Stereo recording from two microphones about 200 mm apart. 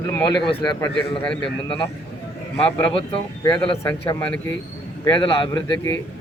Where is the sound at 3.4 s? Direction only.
20° left (ahead or behind).